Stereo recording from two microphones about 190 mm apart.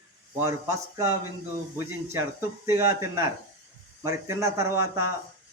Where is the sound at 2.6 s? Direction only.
15° right (ahead or behind).